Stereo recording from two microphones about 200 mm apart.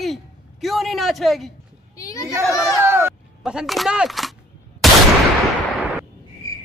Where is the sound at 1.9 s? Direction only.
15° left (ahead or behind).